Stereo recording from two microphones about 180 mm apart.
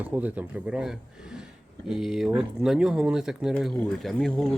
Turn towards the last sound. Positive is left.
turn(degrees=0)  # may be behind; listen again after turning